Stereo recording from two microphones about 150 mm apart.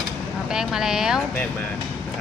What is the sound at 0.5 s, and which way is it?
Speech, 5° right (ahead or behind).